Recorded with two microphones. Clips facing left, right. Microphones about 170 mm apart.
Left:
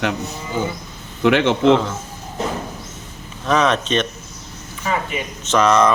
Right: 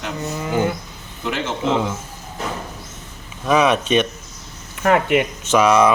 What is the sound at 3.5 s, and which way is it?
Speech, 10° right (ahead or behind).